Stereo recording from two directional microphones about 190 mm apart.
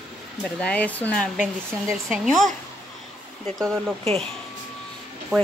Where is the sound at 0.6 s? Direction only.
5° left (ahead or behind).